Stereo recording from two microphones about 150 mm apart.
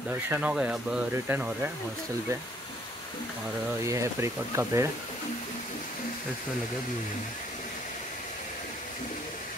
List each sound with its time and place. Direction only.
0.1 s speech: 10° right (ahead or behind)
3.8 s speech: 20° right (ahead or behind)